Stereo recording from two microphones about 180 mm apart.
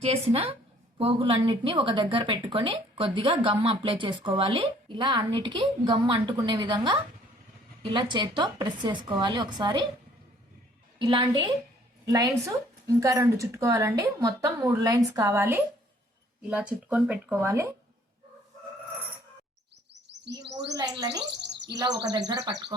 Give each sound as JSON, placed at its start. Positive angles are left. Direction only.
{"t": 0.0, "sound": "a woman's voice", "side_deg": -35}
{"t": 11.0, "sound": "a woman's voice", "side_deg": -25}
{"t": 19.9, "sound": "chirp", "side_deg": -75}
{"t": 20.6, "sound": "a woman's voice", "side_deg": -20}
{"t": 21.4, "sound": "bird", "side_deg": -70}
{"t": 21.8, "sound": "a woman's voice", "side_deg": -20}